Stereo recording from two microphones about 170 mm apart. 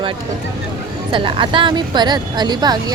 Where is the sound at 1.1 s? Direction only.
30° right (ahead or behind).